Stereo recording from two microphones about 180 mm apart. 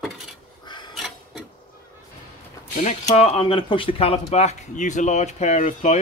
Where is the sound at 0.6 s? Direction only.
25° left (ahead or behind).